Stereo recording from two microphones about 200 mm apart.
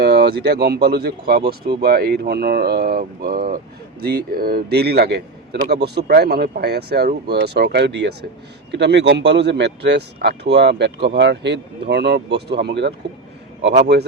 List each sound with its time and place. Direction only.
0.0 s a man's voice: 55° right (ahead or behind)